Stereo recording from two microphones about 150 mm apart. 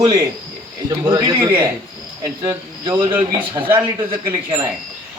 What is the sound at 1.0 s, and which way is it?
Speech, 30° right (ahead or behind).